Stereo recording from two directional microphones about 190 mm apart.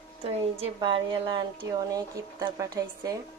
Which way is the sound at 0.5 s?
30° right (ahead or behind).